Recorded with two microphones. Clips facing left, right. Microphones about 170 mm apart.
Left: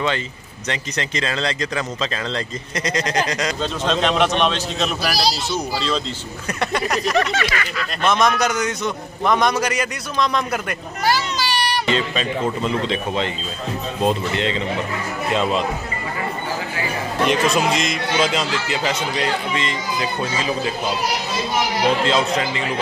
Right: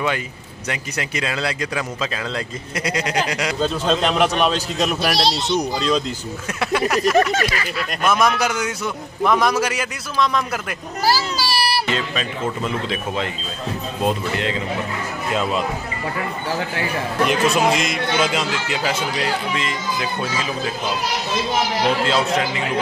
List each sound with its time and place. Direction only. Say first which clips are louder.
0.7 s a man's voice: left 1 dB; 10° right (ahead or behind)
6.6 s a man's voice: right 3 dB; 5° right (ahead or behind)
7.3 s a sound: right 1 dB; 30° right (ahead or behind)
8.0 s a man's voice: left 1 dB; 5° right (ahead or behind)
11.1 s child singing: even; 35° right (ahead or behind)
11.7 s a man's voice: left 2 dB; 5° right (ahead or behind)
17.3 s a man's voice: even; 5° right (ahead or behind)
22.0 s a man's voice: even; centre (ahead or behind)